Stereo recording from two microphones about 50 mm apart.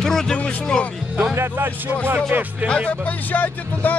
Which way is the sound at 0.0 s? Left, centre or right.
Centre.